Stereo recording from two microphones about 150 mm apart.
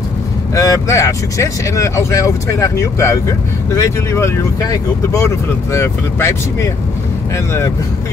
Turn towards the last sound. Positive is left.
turn(degrees=20)  # may be behind; listen again after turning